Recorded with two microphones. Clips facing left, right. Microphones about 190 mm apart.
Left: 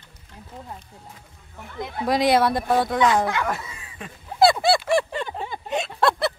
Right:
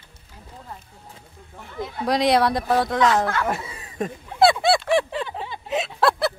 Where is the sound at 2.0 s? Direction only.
Centre (ahead or behind).